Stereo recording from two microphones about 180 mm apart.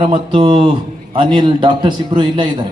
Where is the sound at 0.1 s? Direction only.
25° right (ahead or behind).